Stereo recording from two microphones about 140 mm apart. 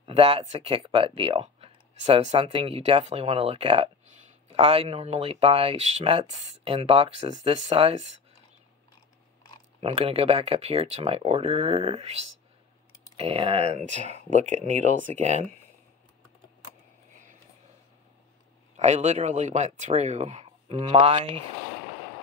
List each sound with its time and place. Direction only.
0.0 s speech: 45° right (ahead or behind)
9.8 s speech: 45° right (ahead or behind)
18.8 s speech: 55° right (ahead or behind)